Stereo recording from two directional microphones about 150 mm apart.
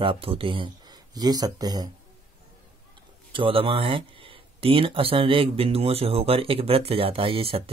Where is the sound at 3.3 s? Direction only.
35° right (ahead or behind).